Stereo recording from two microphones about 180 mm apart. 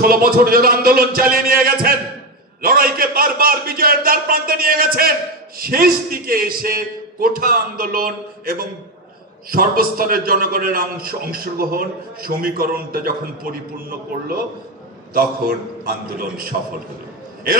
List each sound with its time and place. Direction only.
0.0 s a man's voice: 55° right (ahead or behind)